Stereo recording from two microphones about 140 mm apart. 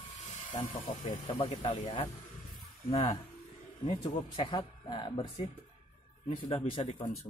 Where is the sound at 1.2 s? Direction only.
40° left (ahead or behind).